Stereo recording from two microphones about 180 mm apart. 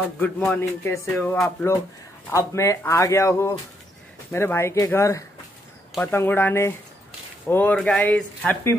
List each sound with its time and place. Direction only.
0.2 s speech: 10° left (ahead or behind)